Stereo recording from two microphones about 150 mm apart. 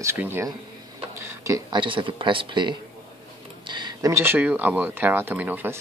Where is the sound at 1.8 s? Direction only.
35° right (ahead or behind).